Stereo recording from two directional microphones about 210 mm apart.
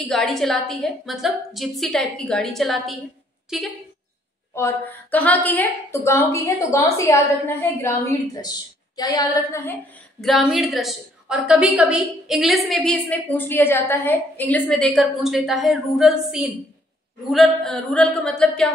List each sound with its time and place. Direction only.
0.0 s a woman's voice: 5° left (ahead or behind)
4.6 s a woman's voice: 10° left (ahead or behind)
8.9 s a woman's voice: 20° left (ahead or behind)
10.2 s a woman's voice: centre (ahead or behind)